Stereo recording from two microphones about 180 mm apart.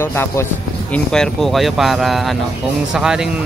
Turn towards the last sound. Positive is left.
turn(degrees=-5)  # may be behind; listen again after turning